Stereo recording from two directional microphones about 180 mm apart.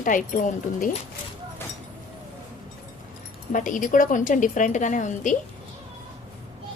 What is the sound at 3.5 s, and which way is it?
A woman's voice, 45° left (ahead or behind).